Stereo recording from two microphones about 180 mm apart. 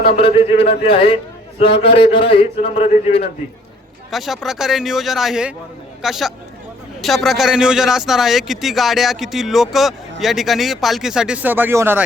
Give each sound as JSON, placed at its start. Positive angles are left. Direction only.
{"t": 0.2, "sound": "a man's voice", "side_deg": 30}
{"t": 2.6, "sound": "a man's voice", "side_deg": 40}
{"t": 4.1, "sound": "a man's voice", "side_deg": 0}